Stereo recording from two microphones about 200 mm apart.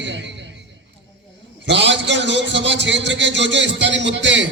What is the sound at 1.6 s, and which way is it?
A man's voice, 60° right (ahead or behind).